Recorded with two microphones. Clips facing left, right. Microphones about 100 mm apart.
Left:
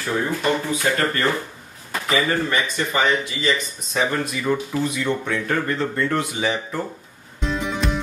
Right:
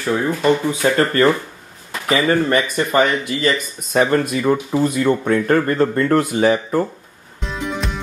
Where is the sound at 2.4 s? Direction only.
50° right (ahead or behind).